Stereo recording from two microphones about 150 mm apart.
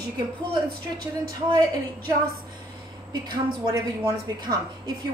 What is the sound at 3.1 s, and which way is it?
A woman's voice, 25° right (ahead or behind).